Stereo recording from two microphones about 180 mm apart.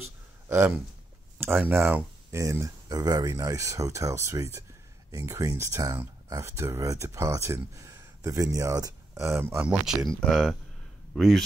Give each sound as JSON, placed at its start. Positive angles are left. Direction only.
{"t": 0.5, "sound": "speech", "side_deg": -15}
{"t": 10.2, "sound": "speech", "side_deg": 0}